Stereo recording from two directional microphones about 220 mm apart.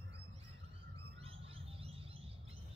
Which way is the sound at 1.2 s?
25° right (ahead or behind).